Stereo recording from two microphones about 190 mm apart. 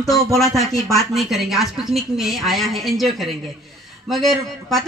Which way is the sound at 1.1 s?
Centre (ahead or behind).